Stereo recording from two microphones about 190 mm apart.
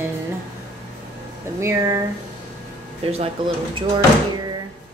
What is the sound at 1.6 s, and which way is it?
Speech, 15° right (ahead or behind).